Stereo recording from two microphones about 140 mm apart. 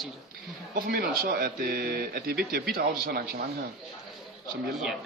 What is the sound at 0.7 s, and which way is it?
Speech, 90° right.